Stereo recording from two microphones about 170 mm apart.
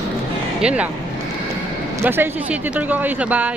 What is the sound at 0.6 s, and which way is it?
Speech, 5° right (ahead or behind).